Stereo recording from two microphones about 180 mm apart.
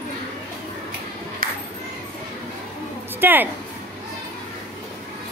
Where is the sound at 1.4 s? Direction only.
50° right (ahead or behind).